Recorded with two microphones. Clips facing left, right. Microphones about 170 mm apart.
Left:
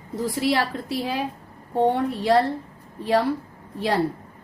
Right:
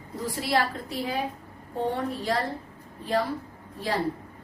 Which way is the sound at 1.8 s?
70° left (ahead or behind).